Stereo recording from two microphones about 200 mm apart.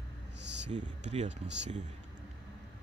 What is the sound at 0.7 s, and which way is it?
Speech, 35° right (ahead or behind).